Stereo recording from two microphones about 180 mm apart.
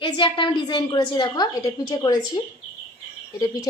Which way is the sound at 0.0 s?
25° left (ahead or behind).